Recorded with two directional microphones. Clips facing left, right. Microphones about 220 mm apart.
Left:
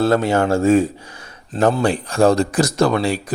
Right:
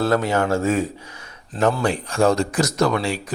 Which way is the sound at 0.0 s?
30° left (ahead or behind).